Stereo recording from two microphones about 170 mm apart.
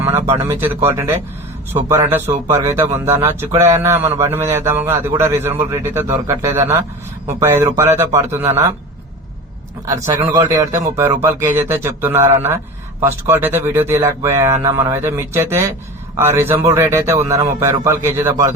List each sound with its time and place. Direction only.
0.0 s a sound: 15° right (ahead or behind)
0.6 s a man's voice: 15° right (ahead or behind)
9.8 s a man's voice: 15° right (ahead or behind)